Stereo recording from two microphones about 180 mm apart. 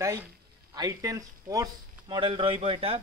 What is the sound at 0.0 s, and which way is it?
Speech, 15° right (ahead or behind).